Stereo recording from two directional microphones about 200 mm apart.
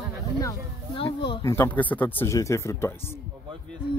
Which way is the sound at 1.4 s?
15° left (ahead or behind).